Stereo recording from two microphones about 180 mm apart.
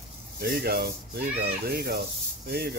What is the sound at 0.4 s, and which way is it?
Speech, 60° right (ahead or behind).